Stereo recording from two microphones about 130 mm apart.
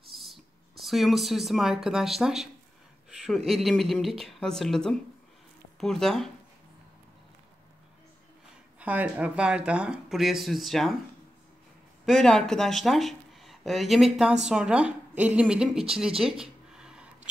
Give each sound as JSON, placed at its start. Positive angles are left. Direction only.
{"t": 0.1, "sound": "speech", "side_deg": 0}
{"t": 8.7, "sound": "speech", "side_deg": -10}
{"t": 12.1, "sound": "speech", "side_deg": 5}
{"t": 16.2, "sound": "a sound", "side_deg": -5}